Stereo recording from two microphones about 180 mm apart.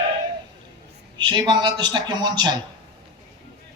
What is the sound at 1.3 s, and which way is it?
A man's voice, 25° right (ahead or behind).